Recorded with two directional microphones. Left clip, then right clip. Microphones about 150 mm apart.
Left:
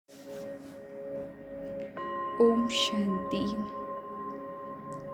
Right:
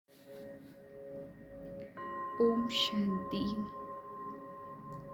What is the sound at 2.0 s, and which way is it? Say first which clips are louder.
Music: left 5 dB; 30° left (ahead or behind).